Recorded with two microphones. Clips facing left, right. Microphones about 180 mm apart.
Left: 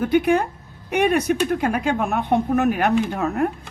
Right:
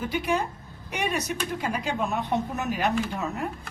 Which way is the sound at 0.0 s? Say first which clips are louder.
Left 9 dB; 55° left (ahead or behind).